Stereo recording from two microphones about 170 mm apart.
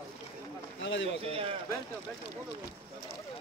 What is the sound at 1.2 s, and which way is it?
Speech, 35° right (ahead or behind).